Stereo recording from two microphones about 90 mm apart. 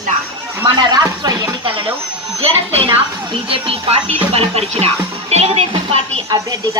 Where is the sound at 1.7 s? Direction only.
75° right (ahead or behind).